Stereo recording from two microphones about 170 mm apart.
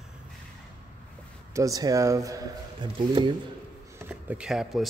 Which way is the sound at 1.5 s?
20° right (ahead or behind).